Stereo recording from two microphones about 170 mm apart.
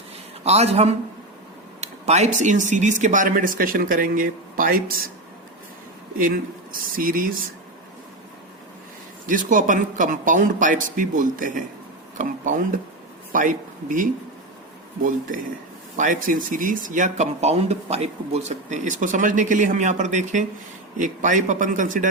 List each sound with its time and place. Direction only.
0.4 s a man's voice: 40° right (ahead or behind); by 4.8 s 55° right (ahead or behind)
6.9 s speech: 55° right (ahead or behind)
9.2 s speech: 50° right (ahead or behind)
16.0 s speech: 50° right (ahead or behind)